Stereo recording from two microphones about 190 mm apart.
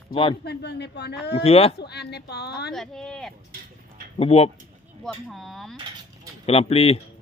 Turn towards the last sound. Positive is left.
turn(degrees=30)  # may be behind; listen again after turning